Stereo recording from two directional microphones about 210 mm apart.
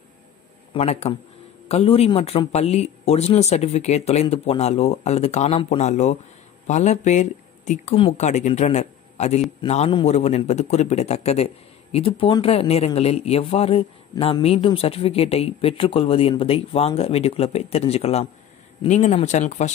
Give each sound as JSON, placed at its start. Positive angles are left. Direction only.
{"t": 0.7, "sound": "a man's voice", "side_deg": 30}